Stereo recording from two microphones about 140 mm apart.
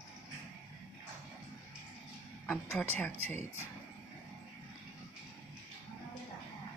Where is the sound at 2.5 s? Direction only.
10° left (ahead or behind).